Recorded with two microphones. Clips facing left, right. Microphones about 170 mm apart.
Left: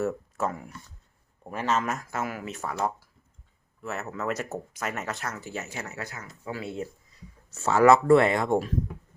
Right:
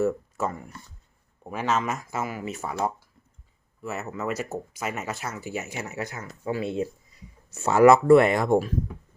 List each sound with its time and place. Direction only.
0.0 s speech: centre (ahead or behind)
3.8 s speech: 5° right (ahead or behind)